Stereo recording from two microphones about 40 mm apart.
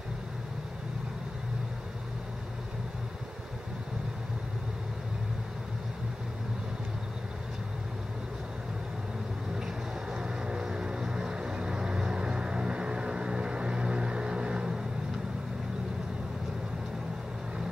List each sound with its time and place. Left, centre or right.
10.1 s music: right